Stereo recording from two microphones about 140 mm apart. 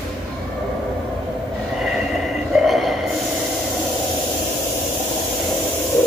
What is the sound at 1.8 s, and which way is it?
Vehicle, 5° right (ahead or behind).